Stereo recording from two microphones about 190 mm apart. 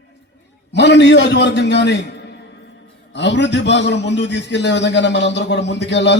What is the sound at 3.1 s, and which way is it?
A man's voice, 70° left (ahead or behind).